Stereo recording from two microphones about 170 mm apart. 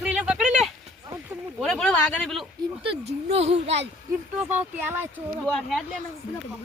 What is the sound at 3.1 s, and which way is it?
Speech, 40° right (ahead or behind).